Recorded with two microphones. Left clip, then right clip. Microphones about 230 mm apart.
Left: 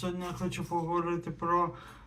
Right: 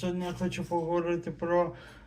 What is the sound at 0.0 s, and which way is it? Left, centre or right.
Speech, centre.